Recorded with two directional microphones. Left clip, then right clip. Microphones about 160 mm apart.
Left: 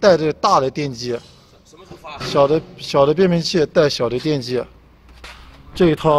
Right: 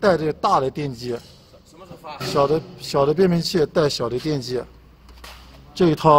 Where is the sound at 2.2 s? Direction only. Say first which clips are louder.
Left 4 dB; 10° left (ahead or behind).